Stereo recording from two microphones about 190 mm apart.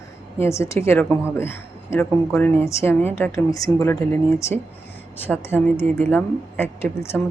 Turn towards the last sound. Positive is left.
turn(degrees=10)  # may be behind; listen again after turning